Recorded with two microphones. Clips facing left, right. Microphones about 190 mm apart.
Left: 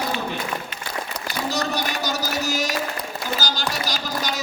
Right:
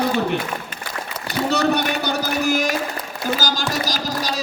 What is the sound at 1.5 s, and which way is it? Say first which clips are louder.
Speech: right 7 dB; 65° right (ahead or behind).